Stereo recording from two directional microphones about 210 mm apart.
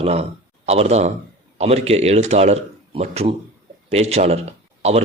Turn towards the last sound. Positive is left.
turn(degrees=-30)  # may be behind; listen again after turning